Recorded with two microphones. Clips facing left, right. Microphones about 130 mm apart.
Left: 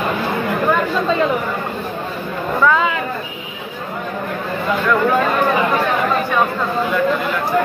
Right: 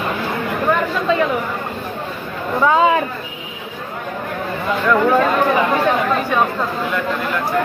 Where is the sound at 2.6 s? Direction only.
30° right (ahead or behind).